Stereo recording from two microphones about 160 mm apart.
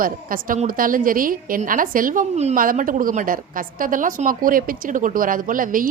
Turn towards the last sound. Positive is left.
turn(degrees=-60)  # may be behind; listen again after turning